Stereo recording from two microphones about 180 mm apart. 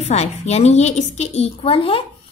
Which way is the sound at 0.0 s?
35° left (ahead or behind).